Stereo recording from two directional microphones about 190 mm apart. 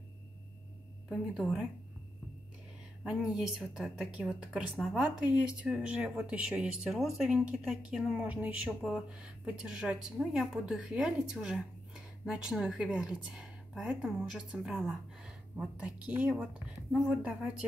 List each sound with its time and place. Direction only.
1.0 s speech: centre (ahead or behind)
3.0 s a woman's voice: centre (ahead or behind)